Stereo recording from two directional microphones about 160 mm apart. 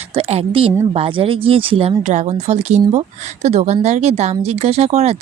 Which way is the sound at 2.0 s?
45° right (ahead or behind).